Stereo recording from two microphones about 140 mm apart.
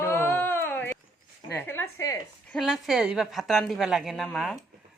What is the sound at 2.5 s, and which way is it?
A woman's voice, centre (ahead or behind).